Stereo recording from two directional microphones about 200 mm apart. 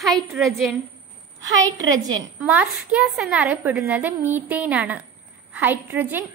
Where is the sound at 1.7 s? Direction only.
20° right (ahead or behind).